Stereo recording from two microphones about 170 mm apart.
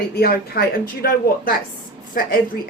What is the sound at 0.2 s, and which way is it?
Speech, 65° left (ahead or behind).